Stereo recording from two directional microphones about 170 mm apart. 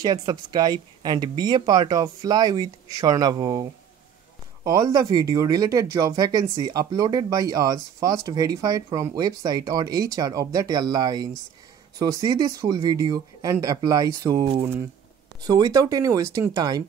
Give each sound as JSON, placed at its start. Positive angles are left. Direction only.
{"t": 0.0, "sound": "speech", "side_deg": -25}
{"t": 4.6, "sound": "speech", "side_deg": -20}